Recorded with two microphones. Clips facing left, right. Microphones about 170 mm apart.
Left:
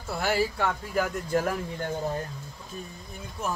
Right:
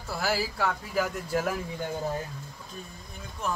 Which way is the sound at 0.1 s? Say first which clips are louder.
Left 3 dB; centre (ahead or behind).